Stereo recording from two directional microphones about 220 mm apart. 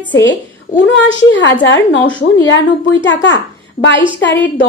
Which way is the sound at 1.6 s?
60° left (ahead or behind).